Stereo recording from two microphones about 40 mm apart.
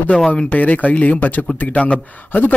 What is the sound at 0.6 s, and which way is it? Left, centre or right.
A man's voice, left.